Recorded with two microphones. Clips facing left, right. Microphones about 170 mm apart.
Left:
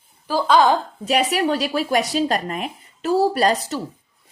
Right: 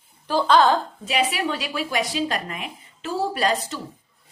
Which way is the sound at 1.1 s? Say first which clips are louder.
Left 5 dB; 40° left (ahead or behind).